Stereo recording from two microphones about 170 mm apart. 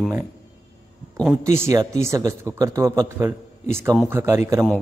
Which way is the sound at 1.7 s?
20° right (ahead or behind).